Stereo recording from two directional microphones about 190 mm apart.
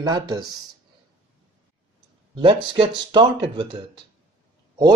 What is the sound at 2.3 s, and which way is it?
Speech, 25° right (ahead or behind).